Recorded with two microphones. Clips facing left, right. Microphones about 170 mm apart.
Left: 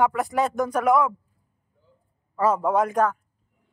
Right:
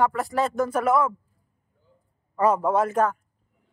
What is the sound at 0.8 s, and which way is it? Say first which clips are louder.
Speech: left 2 dB; 15° left (ahead or behind).